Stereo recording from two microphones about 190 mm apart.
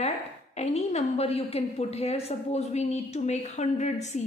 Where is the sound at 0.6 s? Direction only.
35° left (ahead or behind).